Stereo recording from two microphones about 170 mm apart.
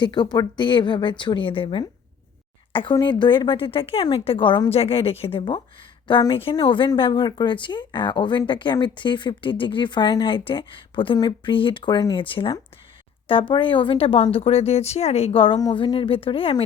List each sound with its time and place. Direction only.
0.0 s a woman's voice: 25° left (ahead or behind)